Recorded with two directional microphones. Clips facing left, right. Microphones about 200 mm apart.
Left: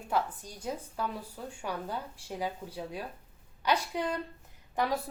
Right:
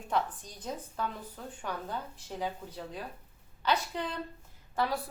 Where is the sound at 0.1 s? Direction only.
10° left (ahead or behind).